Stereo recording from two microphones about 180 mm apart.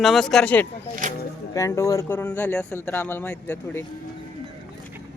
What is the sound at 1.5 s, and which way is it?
Speech, 15° left (ahead or behind).